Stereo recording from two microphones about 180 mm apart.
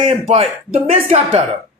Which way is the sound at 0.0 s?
35° right (ahead or behind).